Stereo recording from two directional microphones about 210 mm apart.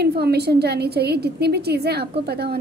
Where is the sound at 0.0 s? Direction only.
50° right (ahead or behind).